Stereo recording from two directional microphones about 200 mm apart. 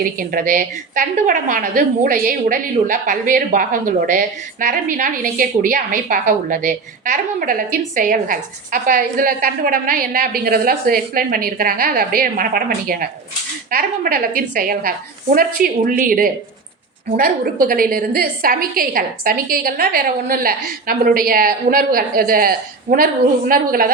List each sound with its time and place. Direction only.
0.0 s a woman's voice: 45° right (ahead or behind)